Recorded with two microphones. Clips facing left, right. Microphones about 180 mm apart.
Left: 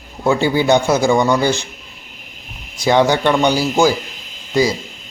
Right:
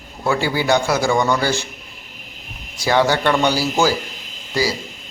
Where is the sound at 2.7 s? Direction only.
20° left (ahead or behind).